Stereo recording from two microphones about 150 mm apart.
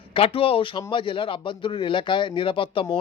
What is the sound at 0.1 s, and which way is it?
Speech, 40° left (ahead or behind).